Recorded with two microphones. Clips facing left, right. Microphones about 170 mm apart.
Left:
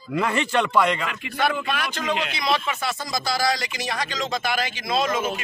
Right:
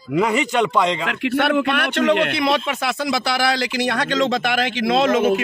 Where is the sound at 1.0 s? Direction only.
70° right (ahead or behind).